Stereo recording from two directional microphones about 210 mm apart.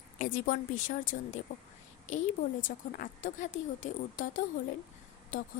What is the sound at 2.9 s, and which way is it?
A woman's voice, 40° left (ahead or behind).